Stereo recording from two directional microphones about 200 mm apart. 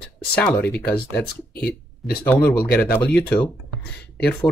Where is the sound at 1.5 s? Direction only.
50° left (ahead or behind).